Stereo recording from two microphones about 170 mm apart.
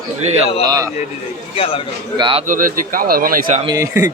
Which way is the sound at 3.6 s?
20° right (ahead or behind).